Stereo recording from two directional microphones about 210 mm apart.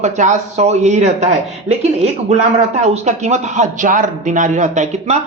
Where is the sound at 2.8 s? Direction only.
30° right (ahead or behind).